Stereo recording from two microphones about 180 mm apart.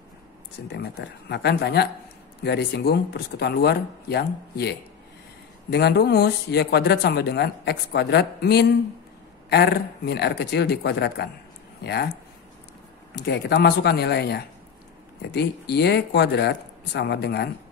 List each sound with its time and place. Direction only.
0.7 s speech: 70° left (ahead or behind)
13.1 s speech: 70° left (ahead or behind)